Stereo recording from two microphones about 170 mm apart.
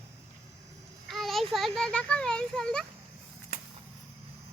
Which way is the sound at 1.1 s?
Centre (ahead or behind).